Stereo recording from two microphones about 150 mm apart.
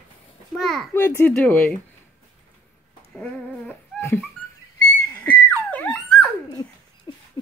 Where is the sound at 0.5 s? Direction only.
Centre (ahead or behind).